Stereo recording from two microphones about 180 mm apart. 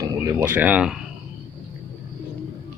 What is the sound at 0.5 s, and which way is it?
Speech, 5° right (ahead or behind).